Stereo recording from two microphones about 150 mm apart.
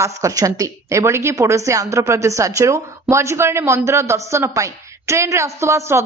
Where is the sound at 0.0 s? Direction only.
20° right (ahead or behind).